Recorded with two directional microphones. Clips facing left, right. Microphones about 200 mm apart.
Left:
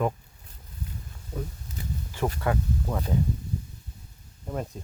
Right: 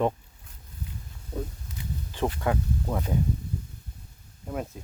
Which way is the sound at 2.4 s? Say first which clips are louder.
Even; 10° right (ahead or behind).